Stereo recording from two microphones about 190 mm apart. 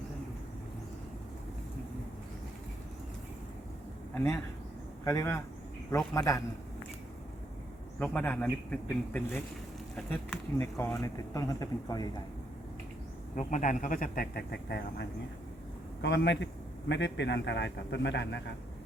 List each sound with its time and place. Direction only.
4.1 s speech: 10° left (ahead or behind)
7.9 s speech: 10° left (ahead or behind)
13.3 s a man's voice: 40° left (ahead or behind); by 18.5 s 70° left (ahead or behind)